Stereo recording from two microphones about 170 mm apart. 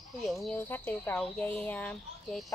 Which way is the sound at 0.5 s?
10° left (ahead or behind).